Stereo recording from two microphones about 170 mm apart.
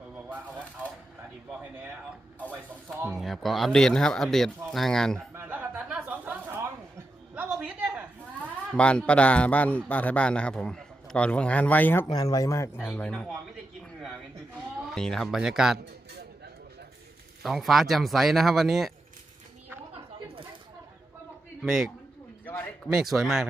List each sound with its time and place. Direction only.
1.5 s speech: 10° right (ahead or behind)
3.1 s speech: centre (ahead or behind)
5.3 s a sound: 10° right (ahead or behind)
8.7 s a man's voice: 5° left (ahead or behind)
12.0 s speech: 20° left (ahead or behind)
12.8 s speech: 5° left (ahead or behind)
14.9 s speech: 5° left (ahead or behind)
17.4 s speech: centre (ahead or behind)
19.9 s a sound: 35° right (ahead or behind)
21.6 s speech: centre (ahead or behind)
22.4 s a sound: 10° left (ahead or behind)
22.9 s speech: 5° right (ahead or behind)